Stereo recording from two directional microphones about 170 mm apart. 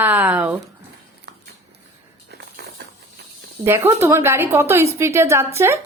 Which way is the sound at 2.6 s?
70° right (ahead or behind).